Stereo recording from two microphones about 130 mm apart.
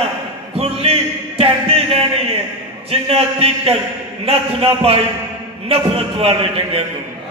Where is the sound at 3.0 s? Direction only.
50° right (ahead or behind).